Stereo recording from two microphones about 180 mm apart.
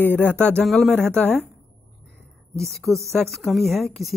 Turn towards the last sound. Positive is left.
turn(degrees=0)  # may be behind; listen again after turning